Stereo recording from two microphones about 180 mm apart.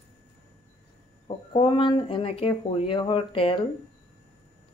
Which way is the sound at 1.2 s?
30° left (ahead or behind).